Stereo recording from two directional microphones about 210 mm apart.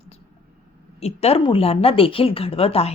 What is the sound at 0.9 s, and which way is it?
A woman's voice, 30° left (ahead or behind).